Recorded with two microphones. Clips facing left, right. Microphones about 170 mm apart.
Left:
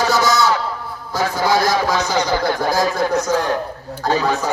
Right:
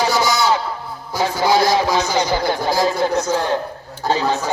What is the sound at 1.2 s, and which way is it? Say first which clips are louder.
A man's voice: right 1 dB; 20° right (ahead or behind).